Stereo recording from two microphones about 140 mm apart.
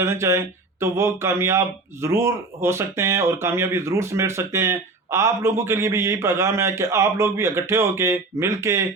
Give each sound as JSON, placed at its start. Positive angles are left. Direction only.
{"t": 0.0, "sound": "speech", "side_deg": -20}